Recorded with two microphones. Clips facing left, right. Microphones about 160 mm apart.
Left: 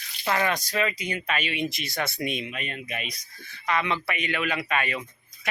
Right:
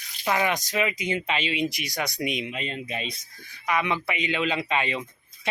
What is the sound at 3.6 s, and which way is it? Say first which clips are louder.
Speech: right 1 dB; 15° right (ahead or behind).